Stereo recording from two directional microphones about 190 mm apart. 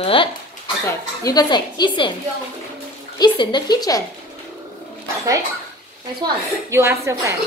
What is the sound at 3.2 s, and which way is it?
Speech, 20° left (ahead or behind).